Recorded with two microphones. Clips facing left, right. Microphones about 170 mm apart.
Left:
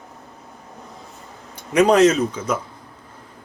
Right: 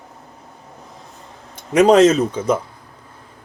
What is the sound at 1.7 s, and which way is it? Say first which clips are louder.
Speech: right 3 dB; 25° right (ahead or behind).